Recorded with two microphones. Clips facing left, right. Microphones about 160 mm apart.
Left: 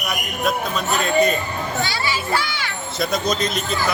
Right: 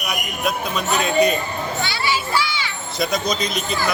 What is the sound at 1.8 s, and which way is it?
Children playing, 45° left (ahead or behind).